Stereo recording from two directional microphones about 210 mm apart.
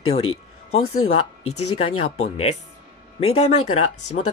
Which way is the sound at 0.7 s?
90° left.